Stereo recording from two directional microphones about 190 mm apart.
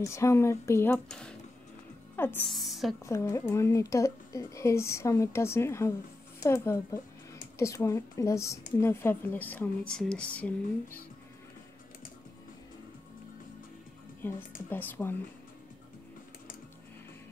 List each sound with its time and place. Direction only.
0.0 s speech: 15° left (ahead or behind)
2.5 s speech: centre (ahead or behind)
3.0 s speech: 15° left (ahead or behind)
14.7 s speech: 10° left (ahead or behind)